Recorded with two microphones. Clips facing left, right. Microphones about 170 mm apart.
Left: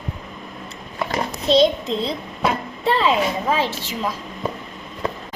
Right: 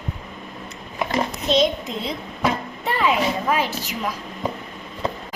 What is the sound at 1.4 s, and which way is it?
A child's voice, 30° left (ahead or behind).